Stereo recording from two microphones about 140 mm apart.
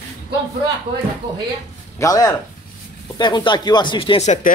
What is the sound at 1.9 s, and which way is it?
Speech, 25° left (ahead or behind).